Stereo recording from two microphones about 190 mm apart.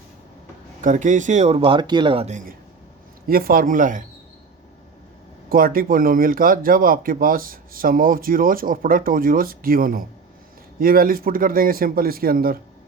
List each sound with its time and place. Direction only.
0.8 s a man's voice: 40° right (ahead or behind)
3.2 s speech: 50° right (ahead or behind)
5.5 s speech: 50° right (ahead or behind)